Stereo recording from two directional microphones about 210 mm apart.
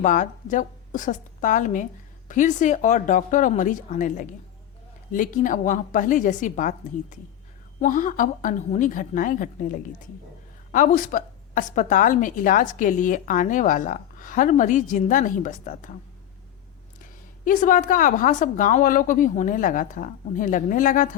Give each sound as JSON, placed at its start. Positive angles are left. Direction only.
{"t": 0.0, "sound": "a woman's voice", "side_deg": 35}
{"t": 17.0, "sound": "a woman's voice", "side_deg": 40}